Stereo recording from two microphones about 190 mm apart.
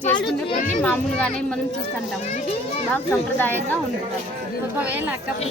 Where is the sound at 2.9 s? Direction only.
10° left (ahead or behind).